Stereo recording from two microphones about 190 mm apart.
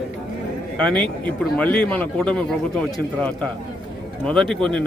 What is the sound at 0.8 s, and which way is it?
Speech, 5° left (ahead or behind).